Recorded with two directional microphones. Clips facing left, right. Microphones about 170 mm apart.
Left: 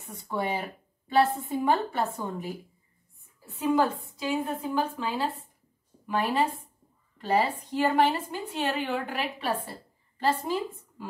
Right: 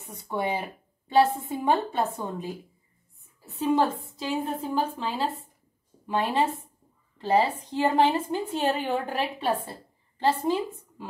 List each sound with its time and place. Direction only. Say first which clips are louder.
0.2 s a woman's voice: right 1 dB; 20° right (ahead or behind)
3.6 s a woman's voice: right 1 dB; 30° right (ahead or behind)
8.5 s a woman's voice: even; 35° right (ahead or behind)
9.7 s a sound: right 1 dB; 20° right (ahead or behind)